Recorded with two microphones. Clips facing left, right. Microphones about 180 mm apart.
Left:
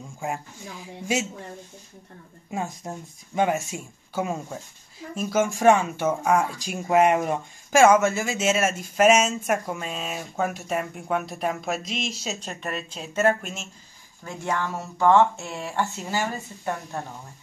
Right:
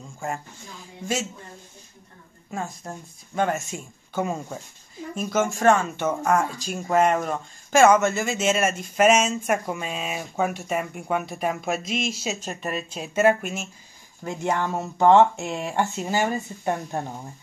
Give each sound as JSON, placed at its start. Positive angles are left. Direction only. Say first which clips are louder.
{"t": 2.5, "sound": "speech", "louder": "left 1 dB", "side_deg": 15}
{"t": 14.2, "sound": "speech", "louder": "right 3 dB", "side_deg": -20}